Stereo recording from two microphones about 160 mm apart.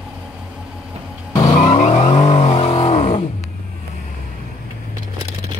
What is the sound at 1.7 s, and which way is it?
Vehicle, 40° left (ahead or behind).